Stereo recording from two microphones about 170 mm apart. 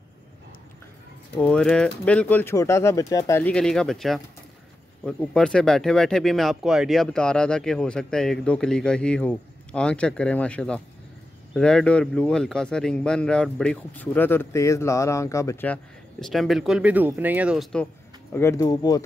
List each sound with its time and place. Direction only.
1.3 s a man's voice: 5° left (ahead or behind)
18.3 s speech: 15° left (ahead or behind)